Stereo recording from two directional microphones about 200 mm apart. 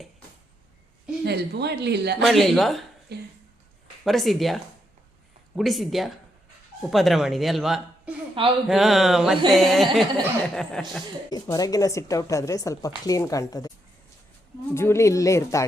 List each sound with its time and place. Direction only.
1.2 s a man's voice: 55° right (ahead or behind)
2.2 s speech: centre (ahead or behind)
3.1 s a sound: 55° right (ahead or behind)
4.0 s speech: centre (ahead or behind)
11.3 s a woman's voice: 20° left (ahead or behind)